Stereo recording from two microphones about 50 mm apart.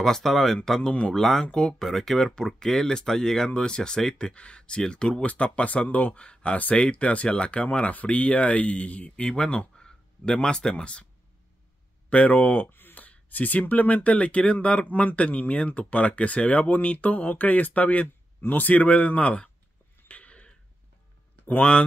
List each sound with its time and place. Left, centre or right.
0.0 s speech: centre; by 9.2 s left
9.2 s speech: centre
12.1 s speech: left
12.6 s speech: left
14.9 s speech: left
15.1 s speech: left
18.0 s a sound: left
18.6 s speech: left
20.1 s a sound: left